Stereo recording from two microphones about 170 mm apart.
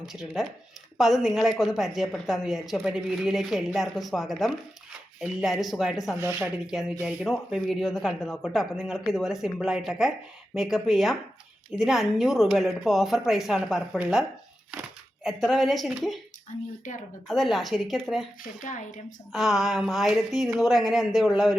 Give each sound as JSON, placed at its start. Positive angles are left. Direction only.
{"t": 0.0, "sound": "speech", "side_deg": 0}
{"t": 6.1, "sound": "speech", "side_deg": -15}
{"t": 7.0, "sound": "speech", "side_deg": -5}
{"t": 17.2, "sound": "speech", "side_deg": 0}
{"t": 18.6, "sound": "speech", "side_deg": 50}
{"t": 19.3, "sound": "speech", "side_deg": 0}